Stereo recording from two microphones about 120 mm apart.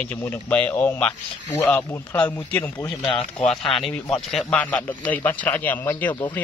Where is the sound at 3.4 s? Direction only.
5° left (ahead or behind).